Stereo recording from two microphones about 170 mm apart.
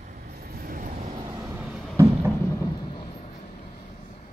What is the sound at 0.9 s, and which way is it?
Vehicle, 40° right (ahead or behind).